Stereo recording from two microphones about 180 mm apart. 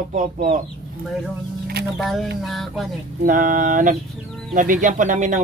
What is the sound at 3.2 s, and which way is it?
Speech, 50° right (ahead or behind).